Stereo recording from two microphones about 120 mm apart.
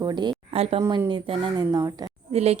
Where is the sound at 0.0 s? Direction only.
35° right (ahead or behind).